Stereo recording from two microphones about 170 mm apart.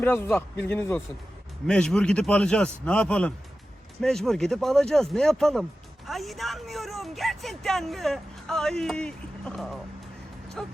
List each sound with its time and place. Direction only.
0.0 s a man's voice: 10° left (ahead or behind)